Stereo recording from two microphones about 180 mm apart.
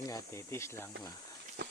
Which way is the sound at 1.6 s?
65° right (ahead or behind).